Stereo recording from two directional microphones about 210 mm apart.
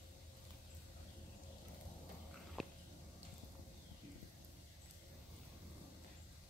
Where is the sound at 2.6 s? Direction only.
Centre (ahead or behind).